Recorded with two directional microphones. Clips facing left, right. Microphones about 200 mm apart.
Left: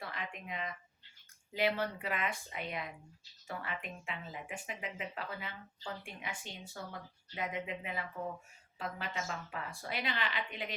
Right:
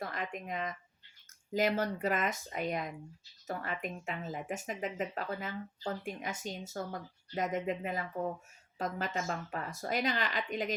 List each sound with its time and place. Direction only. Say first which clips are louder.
0.0 s speech: right 5 dB; 45° right (ahead or behind)